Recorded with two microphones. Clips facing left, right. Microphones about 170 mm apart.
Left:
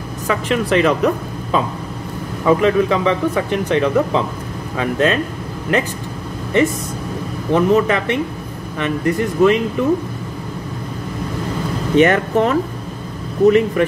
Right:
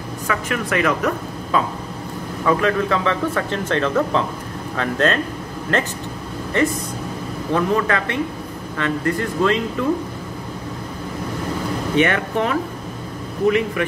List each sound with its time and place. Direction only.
0.3 s a woman's voice: 25° left (ahead or behind)
12.0 s speech: 40° left (ahead or behind)
13.8 s speech: 40° left (ahead or behind)